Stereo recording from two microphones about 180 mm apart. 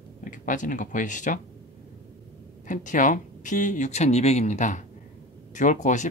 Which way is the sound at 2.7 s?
45° left (ahead or behind).